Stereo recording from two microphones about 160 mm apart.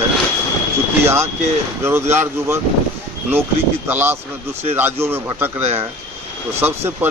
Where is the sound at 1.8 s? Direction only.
15° right (ahead or behind).